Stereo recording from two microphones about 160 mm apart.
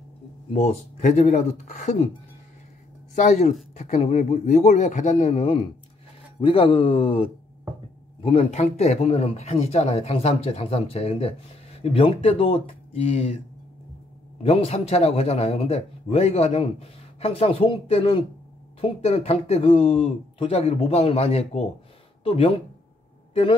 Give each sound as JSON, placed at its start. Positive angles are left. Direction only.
{"t": 0.5, "sound": "speech", "side_deg": 40}
{"t": 3.2, "sound": "a man's voice", "side_deg": 50}
{"t": 14.4, "sound": "a man's voice", "side_deg": 40}